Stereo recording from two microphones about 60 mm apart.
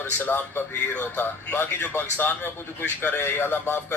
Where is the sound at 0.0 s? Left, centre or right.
Left.